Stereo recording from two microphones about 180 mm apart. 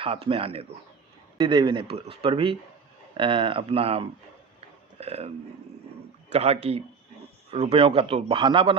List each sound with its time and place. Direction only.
0.0 s a man's voice: 30° right (ahead or behind)
6.3 s a man's voice: 35° right (ahead or behind)